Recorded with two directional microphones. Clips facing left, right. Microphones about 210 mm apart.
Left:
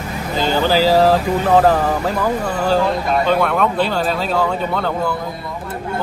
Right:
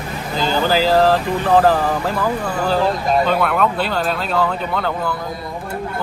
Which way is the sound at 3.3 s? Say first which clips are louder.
Left 1 dB; centre (ahead or behind).